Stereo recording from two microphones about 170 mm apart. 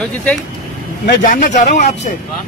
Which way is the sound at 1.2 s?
50° left (ahead or behind).